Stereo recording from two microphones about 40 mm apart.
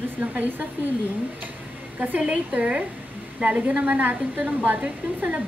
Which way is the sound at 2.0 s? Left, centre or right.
Right.